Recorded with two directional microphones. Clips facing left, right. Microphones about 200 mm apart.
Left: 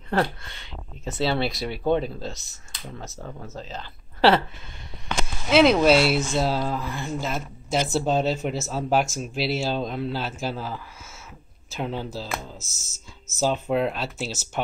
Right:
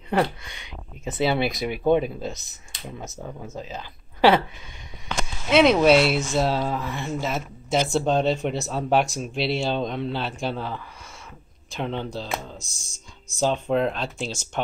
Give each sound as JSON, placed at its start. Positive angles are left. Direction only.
{"t": 0.2, "sound": "speech", "side_deg": -15}
{"t": 3.1, "sound": "speech", "side_deg": -5}
{"t": 5.2, "sound": "speech", "side_deg": 0}